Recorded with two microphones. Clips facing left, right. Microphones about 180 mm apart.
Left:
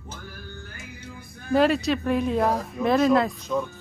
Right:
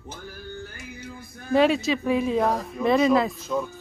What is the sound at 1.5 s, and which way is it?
Speech, centre (ahead or behind).